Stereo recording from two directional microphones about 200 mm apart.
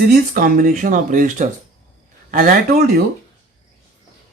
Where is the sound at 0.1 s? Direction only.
45° right (ahead or behind).